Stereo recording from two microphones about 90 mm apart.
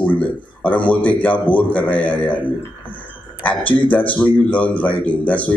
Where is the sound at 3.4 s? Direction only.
15° left (ahead or behind).